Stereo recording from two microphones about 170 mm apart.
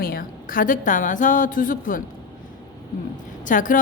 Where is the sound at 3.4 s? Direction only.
50° left (ahead or behind).